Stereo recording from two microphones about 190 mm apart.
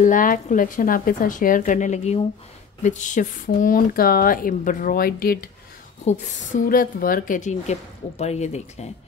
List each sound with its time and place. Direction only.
0.0 s speech: 45° left (ahead or behind)
6.0 s speech: 40° left (ahead or behind)